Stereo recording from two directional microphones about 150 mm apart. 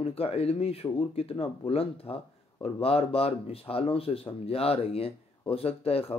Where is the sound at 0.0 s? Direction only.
40° left (ahead or behind).